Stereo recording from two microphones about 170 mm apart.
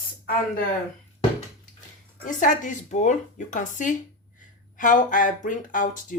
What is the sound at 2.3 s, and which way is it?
Speech, 50° left (ahead or behind).